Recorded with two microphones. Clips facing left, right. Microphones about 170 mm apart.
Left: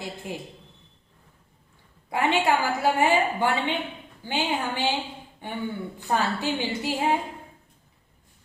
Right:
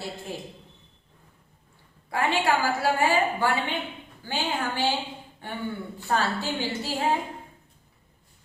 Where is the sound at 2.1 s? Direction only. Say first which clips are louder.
Left 2 dB; 20° left (ahead or behind).